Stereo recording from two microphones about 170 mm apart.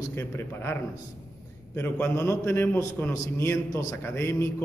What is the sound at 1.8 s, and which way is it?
A man's voice, 10° left (ahead or behind).